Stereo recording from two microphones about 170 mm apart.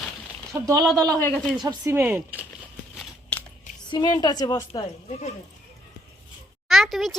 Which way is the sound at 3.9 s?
25° left (ahead or behind).